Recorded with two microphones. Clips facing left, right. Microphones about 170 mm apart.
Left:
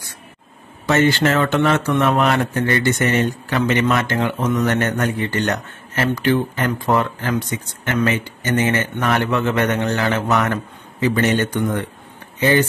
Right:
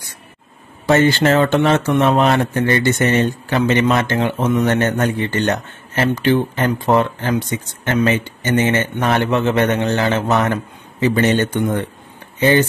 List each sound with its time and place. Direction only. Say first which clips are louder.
0.8 s speech: right 3 dB; 30° right (ahead or behind)